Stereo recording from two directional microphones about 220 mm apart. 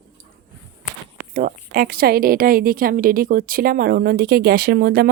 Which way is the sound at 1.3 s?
40° right (ahead or behind).